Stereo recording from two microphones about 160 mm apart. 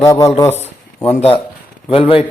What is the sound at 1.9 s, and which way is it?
Speech, 35° left (ahead or behind).